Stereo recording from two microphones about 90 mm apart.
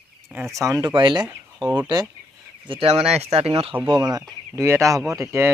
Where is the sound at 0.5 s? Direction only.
40° right (ahead or behind).